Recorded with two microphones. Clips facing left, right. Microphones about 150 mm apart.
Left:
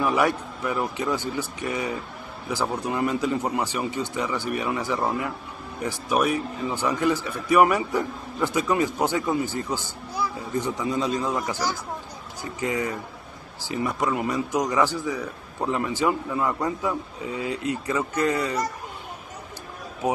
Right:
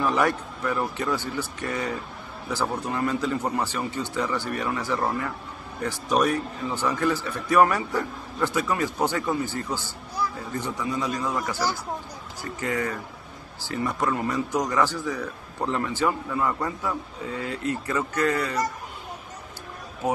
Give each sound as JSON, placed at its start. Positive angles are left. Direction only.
{"t": 0.0, "sound": "a man's voice", "side_deg": 10}